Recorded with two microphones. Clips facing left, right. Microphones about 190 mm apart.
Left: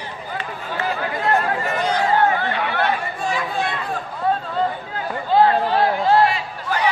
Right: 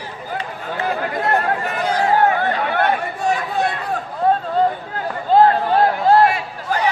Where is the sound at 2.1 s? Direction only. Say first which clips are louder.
Right 2 dB; 40° right (ahead or behind).